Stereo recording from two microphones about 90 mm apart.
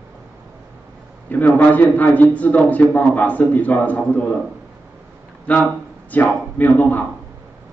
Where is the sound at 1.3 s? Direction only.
20° left (ahead or behind).